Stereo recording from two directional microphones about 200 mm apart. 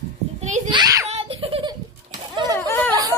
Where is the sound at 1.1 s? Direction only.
30° right (ahead or behind).